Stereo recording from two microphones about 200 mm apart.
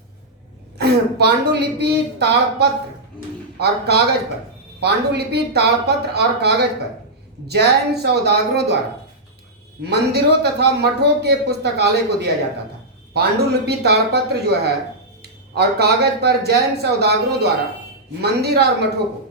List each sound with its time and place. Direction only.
0.8 s a man's voice: 55° right (ahead or behind)
9.8 s a man's voice: 55° right (ahead or behind)
15.5 s a man's voice: 55° right (ahead or behind)